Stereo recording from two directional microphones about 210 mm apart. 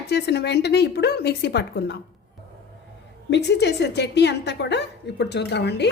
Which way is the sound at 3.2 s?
55° left (ahead or behind).